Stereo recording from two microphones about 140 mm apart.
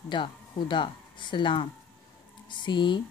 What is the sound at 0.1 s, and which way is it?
A woman's voice, 35° left (ahead or behind).